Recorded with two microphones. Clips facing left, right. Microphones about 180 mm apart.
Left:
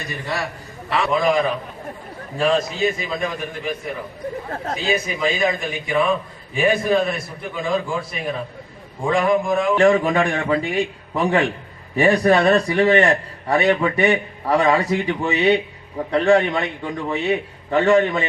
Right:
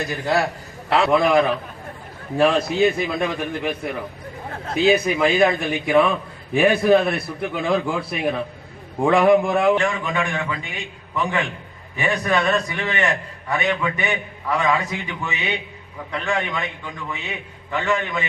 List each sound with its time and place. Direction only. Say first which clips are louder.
0.9 s a man's voice: right 2 dB; 65° right (ahead or behind)
4.9 s a man's voice: right 4 dB; 60° right (ahead or behind)
9.9 s a man's voice: left 7 dB; 40° left (ahead or behind)